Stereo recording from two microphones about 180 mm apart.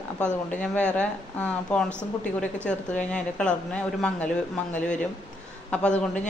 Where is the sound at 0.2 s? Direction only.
5° left (ahead or behind).